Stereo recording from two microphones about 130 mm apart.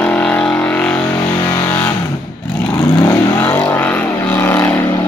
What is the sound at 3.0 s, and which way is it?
Vehicle, 15° left (ahead or behind).